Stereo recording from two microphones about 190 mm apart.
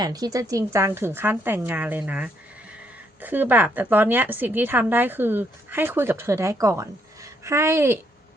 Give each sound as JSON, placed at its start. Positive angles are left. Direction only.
{"t": 0.0, "sound": "a woman's voice", "side_deg": -20}